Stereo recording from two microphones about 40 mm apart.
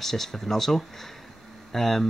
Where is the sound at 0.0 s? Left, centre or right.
Centre.